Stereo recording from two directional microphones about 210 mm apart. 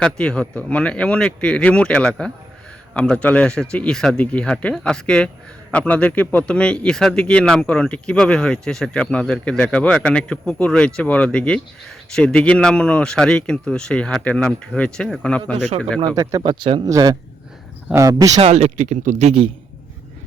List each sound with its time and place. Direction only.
0.0 s a man's voice: 5° left (ahead or behind)
16.1 s speech: 15° right (ahead or behind)
18.3 s speech: 30° right (ahead or behind)